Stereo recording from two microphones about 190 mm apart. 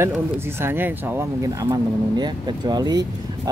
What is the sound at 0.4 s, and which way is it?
Speech, 10° right (ahead or behind).